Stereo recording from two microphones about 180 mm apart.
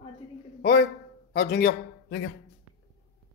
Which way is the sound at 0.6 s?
75° left (ahead or behind).